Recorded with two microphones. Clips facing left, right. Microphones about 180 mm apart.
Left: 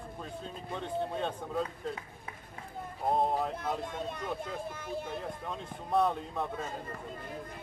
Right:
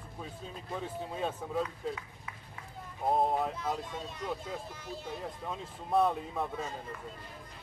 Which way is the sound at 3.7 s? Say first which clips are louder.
Left 3 dB; 55° left (ahead or behind).